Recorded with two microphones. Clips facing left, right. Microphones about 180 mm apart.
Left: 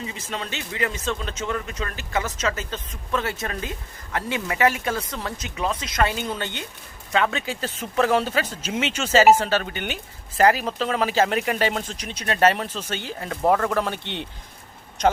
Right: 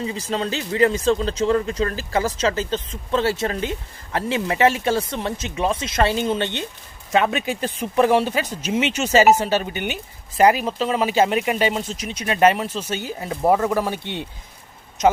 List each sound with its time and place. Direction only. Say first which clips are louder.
0.0 s speech: right 7 dB; 35° right (ahead or behind); by 14.3 s 10° right (ahead or behind)